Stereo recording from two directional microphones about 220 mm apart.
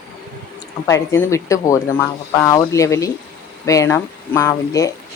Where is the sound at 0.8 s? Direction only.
15° left (ahead or behind).